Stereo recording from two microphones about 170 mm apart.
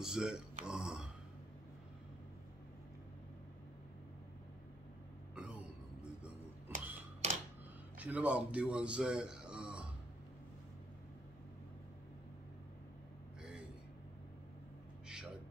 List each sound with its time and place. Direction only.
0.0 s a sound: 5° right (ahead or behind)
5.3 s throat clearing: 5° right (ahead or behind)
6.7 s cash register: 50° right (ahead or behind)
8.0 s a man's voice: 10° right (ahead or behind)